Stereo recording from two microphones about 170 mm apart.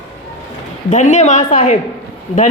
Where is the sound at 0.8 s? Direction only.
45° left (ahead or behind).